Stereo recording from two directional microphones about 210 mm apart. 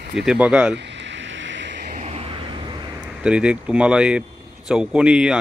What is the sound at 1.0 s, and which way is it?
Vehicle, 60° right (ahead or behind).